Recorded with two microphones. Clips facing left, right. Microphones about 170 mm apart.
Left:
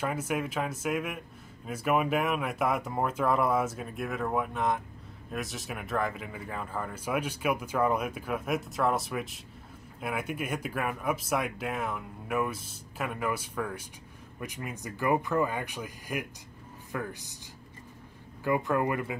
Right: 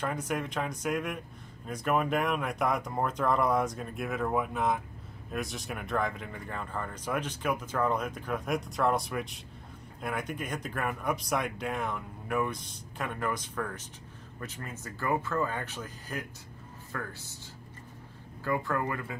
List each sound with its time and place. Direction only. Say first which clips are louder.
0.0 s speech: left 2 dB; 5° left (ahead or behind)
18.4 s speech: left 3 dB; 20° left (ahead or behind)